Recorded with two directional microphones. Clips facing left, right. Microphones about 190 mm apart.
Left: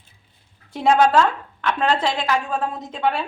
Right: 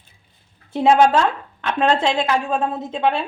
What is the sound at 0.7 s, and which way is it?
A woman's voice, 20° right (ahead or behind).